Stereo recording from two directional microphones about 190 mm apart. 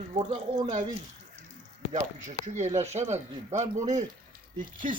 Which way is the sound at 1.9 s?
40° right (ahead or behind).